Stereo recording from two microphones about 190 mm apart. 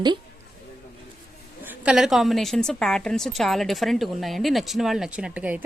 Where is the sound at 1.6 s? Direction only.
10° right (ahead or behind).